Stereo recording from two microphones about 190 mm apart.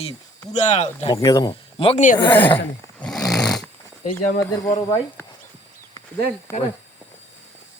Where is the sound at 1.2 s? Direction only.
20° left (ahead or behind); by 2.2 s 40° left (ahead or behind).